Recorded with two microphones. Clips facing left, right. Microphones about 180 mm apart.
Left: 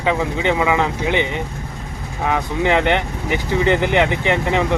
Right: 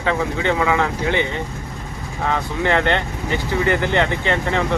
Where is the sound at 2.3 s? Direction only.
15° left (ahead or behind).